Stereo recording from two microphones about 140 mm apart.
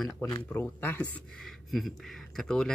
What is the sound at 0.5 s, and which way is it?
Speech, 15° left (ahead or behind).